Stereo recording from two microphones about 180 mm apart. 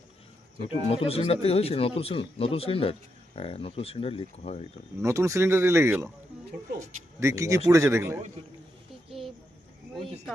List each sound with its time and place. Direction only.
0.7 s speech: 30° left (ahead or behind)
5.0 s speech: 15° right (ahead or behind)
9.0 s a sound: centre (ahead or behind)